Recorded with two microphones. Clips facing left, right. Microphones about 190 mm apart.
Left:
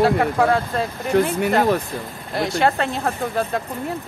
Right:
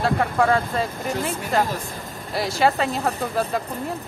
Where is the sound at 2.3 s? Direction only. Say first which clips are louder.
Left 1 dB; centre (ahead or behind).